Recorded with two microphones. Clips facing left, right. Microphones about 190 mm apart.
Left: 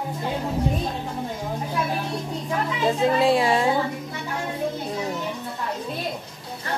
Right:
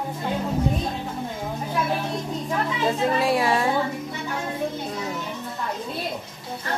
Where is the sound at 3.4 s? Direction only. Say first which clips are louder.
Left 1 dB; 20° left (ahead or behind).